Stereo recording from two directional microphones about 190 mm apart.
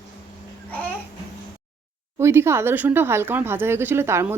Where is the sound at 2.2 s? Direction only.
15° right (ahead or behind).